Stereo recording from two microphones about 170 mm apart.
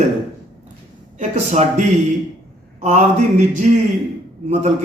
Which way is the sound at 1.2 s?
45° right (ahead or behind).